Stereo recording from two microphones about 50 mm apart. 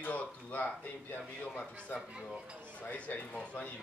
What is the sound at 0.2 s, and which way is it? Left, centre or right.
Speech, left.